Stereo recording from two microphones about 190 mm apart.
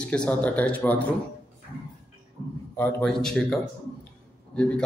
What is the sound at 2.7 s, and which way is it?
A man's voice, 10° left (ahead or behind).